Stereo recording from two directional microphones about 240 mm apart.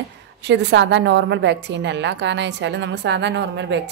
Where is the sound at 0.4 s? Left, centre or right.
Right.